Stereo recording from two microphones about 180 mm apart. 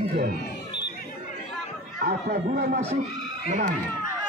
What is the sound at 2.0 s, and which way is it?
Speech, 55° right (ahead or behind).